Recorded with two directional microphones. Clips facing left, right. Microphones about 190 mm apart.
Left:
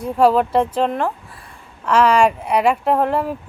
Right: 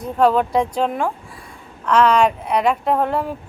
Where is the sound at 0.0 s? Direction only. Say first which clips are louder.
Left 1 dB; 10° left (ahead or behind).